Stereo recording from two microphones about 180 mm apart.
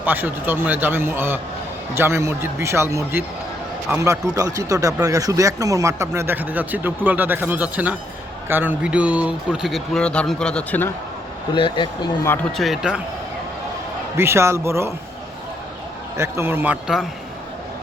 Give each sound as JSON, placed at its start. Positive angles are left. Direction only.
{"t": 0.0, "sound": "a man's voice", "side_deg": -10}
{"t": 11.5, "sound": "speech", "side_deg": 25}
{"t": 12.2, "sound": "speech", "side_deg": 10}
{"t": 12.5, "sound": "a man's voice", "side_deg": 0}
{"t": 14.2, "sound": "speech", "side_deg": -15}
{"t": 16.1, "sound": "speech", "side_deg": -15}